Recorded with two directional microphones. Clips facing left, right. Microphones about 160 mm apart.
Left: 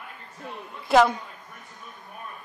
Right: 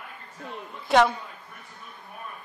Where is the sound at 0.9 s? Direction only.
Centre (ahead or behind).